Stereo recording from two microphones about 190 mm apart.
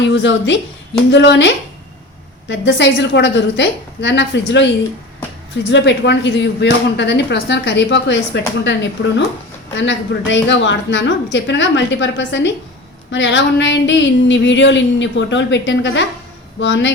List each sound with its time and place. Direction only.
0.1 s a woman's voice: 70° left (ahead or behind)
5.7 s speech: 70° left (ahead or behind)